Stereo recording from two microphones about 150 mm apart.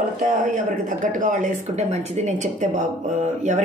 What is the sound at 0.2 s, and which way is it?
Speech, 55° right (ahead or behind).